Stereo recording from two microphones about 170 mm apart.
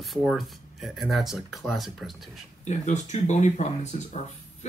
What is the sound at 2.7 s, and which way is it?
Speech, 45° left (ahead or behind).